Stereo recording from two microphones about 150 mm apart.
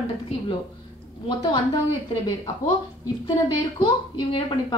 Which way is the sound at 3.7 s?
35° left (ahead or behind).